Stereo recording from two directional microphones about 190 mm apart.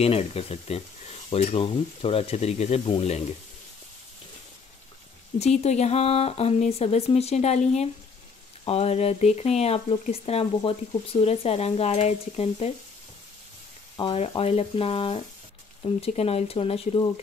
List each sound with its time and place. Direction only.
0.0 s speech: 30° left (ahead or behind)
5.4 s speech: 35° left (ahead or behind)
13.9 s speech: 30° left (ahead or behind)